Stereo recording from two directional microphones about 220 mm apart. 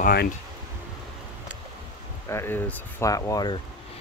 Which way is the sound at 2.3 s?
10° left (ahead or behind).